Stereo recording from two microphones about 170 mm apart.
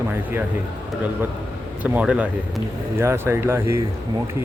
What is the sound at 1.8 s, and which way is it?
Speech, 10° right (ahead or behind).